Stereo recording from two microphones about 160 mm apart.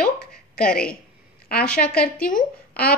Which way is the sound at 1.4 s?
70° left (ahead or behind).